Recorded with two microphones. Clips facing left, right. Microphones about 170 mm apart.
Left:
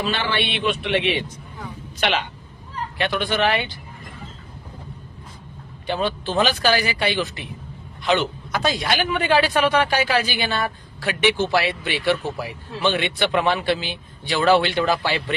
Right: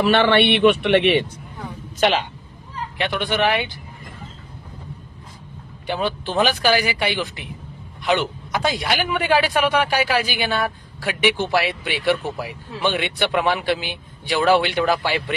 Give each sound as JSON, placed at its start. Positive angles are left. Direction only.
{"t": 0.0, "sound": "a man's voice", "side_deg": -65}
{"t": 2.0, "sound": "speech", "side_deg": -35}
{"t": 3.0, "sound": "a man's voice", "side_deg": -15}
{"t": 5.9, "sound": "a man's voice", "side_deg": -15}